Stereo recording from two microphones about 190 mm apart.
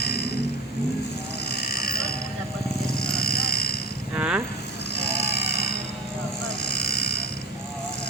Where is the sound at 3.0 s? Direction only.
55° left (ahead or behind).